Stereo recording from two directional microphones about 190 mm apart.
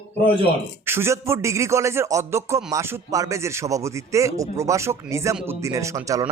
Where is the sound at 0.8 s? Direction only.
15° right (ahead or behind).